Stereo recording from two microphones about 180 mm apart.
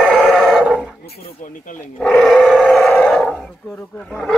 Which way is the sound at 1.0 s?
40° left (ahead or behind).